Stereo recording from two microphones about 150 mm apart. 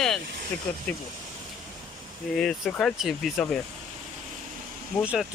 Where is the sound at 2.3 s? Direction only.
Centre (ahead or behind).